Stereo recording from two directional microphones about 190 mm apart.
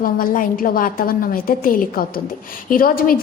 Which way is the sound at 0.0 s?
50° left (ahead or behind).